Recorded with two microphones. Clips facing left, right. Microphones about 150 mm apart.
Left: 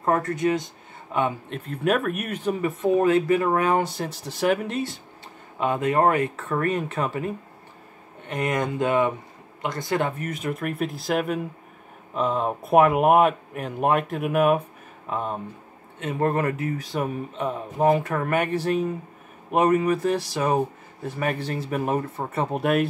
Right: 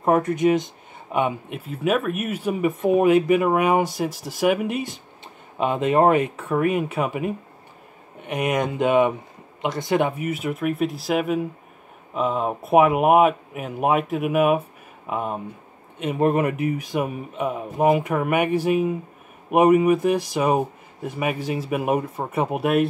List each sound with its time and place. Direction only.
0.0 s speech: 20° right (ahead or behind)
1.6 s speech: 5° right (ahead or behind)